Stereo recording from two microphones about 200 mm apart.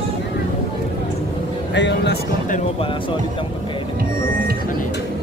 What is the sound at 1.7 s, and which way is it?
Music, 60° left (ahead or behind).